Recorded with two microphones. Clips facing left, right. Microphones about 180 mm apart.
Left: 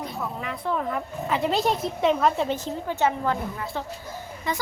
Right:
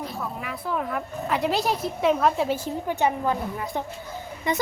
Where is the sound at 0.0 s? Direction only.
5° right (ahead or behind).